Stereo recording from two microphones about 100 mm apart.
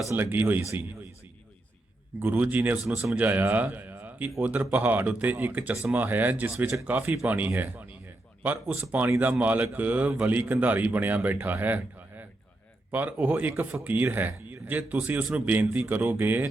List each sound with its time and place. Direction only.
0.1 s speech: 20° right (ahead or behind)
2.1 s a man's voice: 20° right (ahead or behind)